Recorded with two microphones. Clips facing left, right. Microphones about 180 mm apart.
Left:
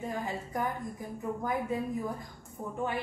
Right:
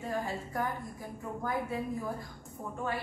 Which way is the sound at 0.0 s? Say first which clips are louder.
Even; 20° left (ahead or behind).